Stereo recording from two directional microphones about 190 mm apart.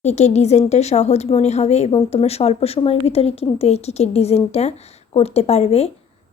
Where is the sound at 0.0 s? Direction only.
35° left (ahead or behind).